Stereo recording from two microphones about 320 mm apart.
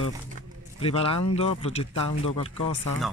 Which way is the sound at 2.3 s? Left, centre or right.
Left.